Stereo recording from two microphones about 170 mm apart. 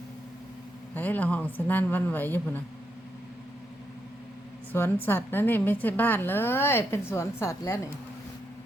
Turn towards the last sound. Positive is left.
turn(degrees=15)  # may be behind; listen again after turning